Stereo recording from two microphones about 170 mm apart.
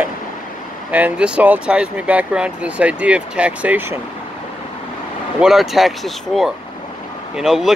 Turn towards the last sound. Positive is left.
turn(degrees=0)  # may be behind; listen again after turning